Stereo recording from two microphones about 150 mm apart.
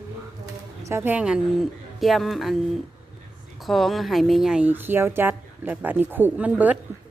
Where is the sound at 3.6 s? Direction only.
Centre (ahead or behind).